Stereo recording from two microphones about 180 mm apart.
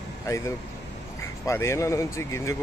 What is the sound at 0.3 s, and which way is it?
Speech, 15° left (ahead or behind).